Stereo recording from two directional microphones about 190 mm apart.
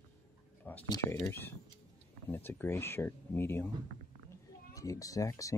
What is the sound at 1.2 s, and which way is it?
Speech, 10° left (ahead or behind).